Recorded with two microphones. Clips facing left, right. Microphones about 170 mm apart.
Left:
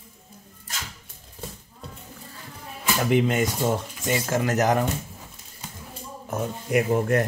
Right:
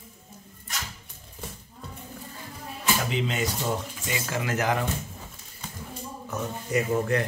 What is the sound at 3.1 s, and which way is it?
Speech, 50° left (ahead or behind).